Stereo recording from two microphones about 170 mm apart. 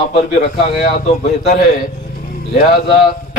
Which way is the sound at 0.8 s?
45° left (ahead or behind).